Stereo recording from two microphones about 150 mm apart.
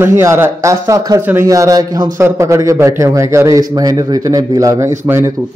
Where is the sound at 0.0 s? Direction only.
20° right (ahead or behind).